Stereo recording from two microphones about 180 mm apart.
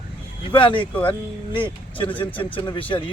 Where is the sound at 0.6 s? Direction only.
30° left (ahead or behind).